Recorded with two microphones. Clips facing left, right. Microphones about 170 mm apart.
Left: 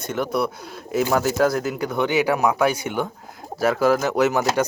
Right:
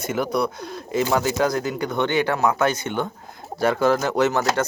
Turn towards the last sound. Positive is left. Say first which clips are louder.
# left 1 dB
turn(degrees=10)  # may be behind; listen again after turning